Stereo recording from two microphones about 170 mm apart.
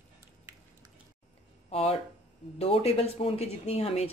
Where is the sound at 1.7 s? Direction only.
35° left (ahead or behind).